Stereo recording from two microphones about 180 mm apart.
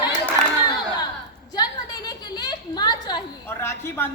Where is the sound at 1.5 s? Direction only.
20° left (ahead or behind).